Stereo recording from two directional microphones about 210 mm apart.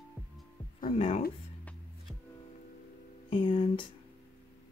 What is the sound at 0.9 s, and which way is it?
Speech, 30° left (ahead or behind).